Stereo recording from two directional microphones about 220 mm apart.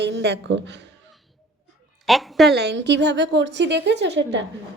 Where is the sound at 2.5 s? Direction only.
50° right (ahead or behind).